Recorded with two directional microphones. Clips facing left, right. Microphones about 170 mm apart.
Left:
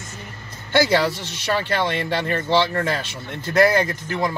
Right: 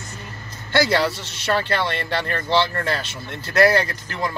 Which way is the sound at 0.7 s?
15° left (ahead or behind).